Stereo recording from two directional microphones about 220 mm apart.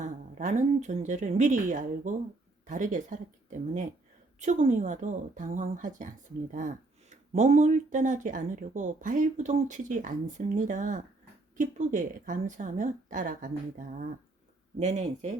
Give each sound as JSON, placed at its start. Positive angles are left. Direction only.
{"t": 0.0, "sound": "speech", "side_deg": -35}
{"t": 4.4, "sound": "speech", "side_deg": -30}